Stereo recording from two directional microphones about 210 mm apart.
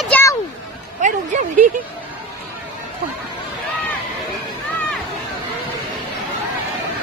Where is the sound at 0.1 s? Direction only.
15° left (ahead or behind).